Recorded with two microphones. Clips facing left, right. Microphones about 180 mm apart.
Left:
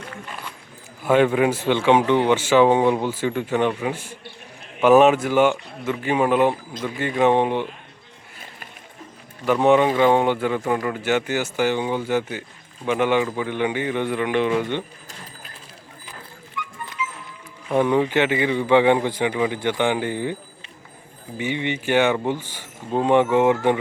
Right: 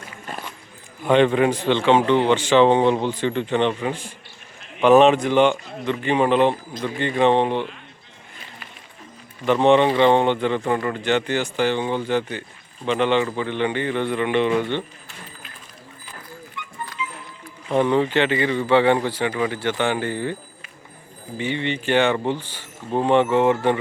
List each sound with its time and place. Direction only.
1.0 s speech: 5° left (ahead or behind)
9.5 s speech: 5° left (ahead or behind)
16.6 s music: 25° right (ahead or behind)
17.7 s speech: 10° left (ahead or behind)
21.3 s speech: 10° left (ahead or behind)